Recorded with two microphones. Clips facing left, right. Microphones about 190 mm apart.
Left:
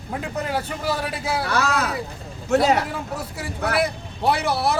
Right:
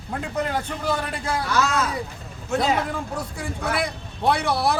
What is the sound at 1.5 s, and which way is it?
Speech, 65° left (ahead or behind).